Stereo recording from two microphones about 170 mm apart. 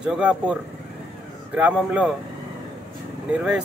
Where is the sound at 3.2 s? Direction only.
5° right (ahead or behind).